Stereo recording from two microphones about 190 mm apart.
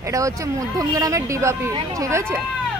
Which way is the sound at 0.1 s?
15° right (ahead or behind).